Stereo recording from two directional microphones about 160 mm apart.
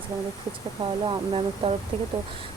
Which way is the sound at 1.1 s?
35° right (ahead or behind).